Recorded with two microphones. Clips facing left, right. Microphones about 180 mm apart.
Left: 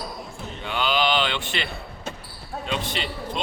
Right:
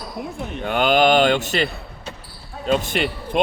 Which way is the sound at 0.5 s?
50° right (ahead or behind).